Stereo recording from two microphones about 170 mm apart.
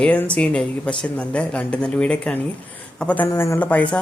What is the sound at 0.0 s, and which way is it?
Speech, 5° left (ahead or behind).